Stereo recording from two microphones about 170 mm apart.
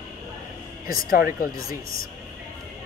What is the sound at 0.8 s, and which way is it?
Speech, 55° left (ahead or behind).